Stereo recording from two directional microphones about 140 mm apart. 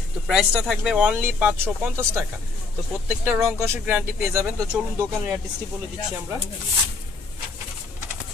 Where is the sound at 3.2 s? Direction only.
15° right (ahead or behind).